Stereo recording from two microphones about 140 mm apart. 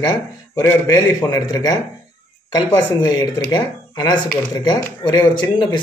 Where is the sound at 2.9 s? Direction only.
30° left (ahead or behind).